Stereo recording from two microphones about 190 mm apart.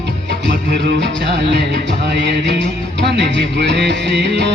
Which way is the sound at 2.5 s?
65° right (ahead or behind).